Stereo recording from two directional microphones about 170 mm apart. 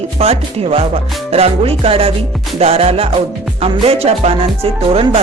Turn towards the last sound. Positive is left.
turn(degrees=-35)  # may be behind; listen again after turning